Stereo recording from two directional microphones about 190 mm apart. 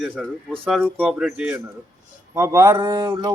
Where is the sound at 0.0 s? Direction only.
5° right (ahead or behind).